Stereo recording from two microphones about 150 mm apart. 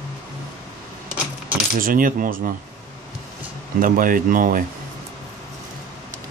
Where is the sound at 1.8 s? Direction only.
70° right (ahead or behind).